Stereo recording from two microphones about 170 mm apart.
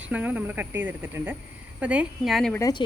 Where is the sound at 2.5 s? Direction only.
20° left (ahead or behind).